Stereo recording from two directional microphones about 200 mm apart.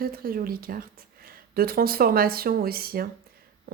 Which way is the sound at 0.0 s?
50° right (ahead or behind).